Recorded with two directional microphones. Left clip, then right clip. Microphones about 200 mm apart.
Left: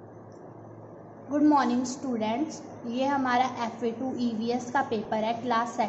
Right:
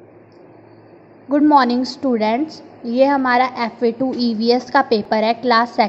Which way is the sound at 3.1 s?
40° right (ahead or behind).